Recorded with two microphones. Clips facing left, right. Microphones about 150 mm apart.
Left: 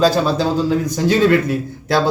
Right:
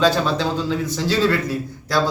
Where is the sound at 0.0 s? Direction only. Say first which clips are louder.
Left 3 dB; 40° left (ahead or behind).